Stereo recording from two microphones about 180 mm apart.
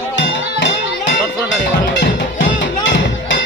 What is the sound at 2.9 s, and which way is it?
Music, 85° left.